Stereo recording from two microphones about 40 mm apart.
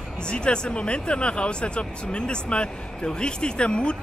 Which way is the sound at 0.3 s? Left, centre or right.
Left.